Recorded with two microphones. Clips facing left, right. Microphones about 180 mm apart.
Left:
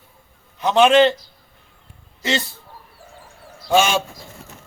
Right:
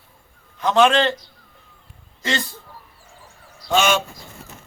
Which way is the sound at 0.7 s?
15° left (ahead or behind).